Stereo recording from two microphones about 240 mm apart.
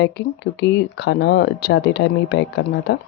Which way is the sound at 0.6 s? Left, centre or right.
Left.